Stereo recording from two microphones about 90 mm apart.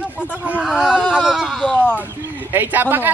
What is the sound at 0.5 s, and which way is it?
Speech, 10° right (ahead or behind).